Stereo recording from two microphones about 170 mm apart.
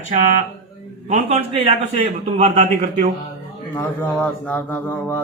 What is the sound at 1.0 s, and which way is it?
A man's voice, 35° right (ahead or behind).